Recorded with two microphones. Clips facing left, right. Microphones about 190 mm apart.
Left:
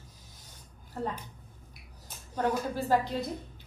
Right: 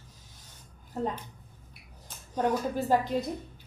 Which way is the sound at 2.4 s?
15° right (ahead or behind).